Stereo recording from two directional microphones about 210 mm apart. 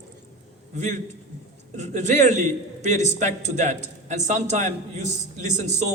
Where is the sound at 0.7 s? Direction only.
35° right (ahead or behind).